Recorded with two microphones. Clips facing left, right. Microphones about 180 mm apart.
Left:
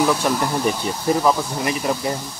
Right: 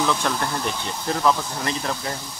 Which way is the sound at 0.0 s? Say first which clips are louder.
Left 4 dB; 10° left (ahead or behind).